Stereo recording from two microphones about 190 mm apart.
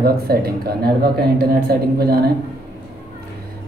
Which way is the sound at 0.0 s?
50° right (ahead or behind).